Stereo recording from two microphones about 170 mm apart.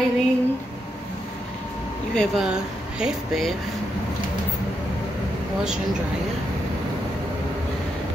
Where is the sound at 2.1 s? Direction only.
Centre (ahead or behind).